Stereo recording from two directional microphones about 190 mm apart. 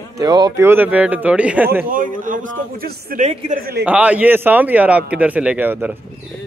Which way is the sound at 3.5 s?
55° right (ahead or behind).